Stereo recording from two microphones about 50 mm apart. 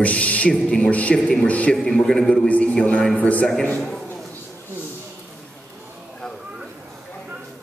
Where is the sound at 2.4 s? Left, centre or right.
Left.